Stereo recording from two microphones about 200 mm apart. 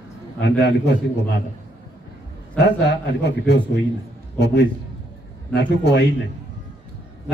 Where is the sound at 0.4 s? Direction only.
60° left (ahead or behind).